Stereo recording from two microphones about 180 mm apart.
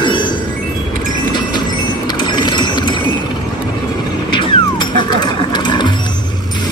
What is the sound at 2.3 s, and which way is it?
Ratchet, 25° left (ahead or behind).